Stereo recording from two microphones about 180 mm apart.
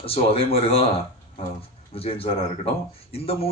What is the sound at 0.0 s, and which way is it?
Speech, 30° left (ahead or behind).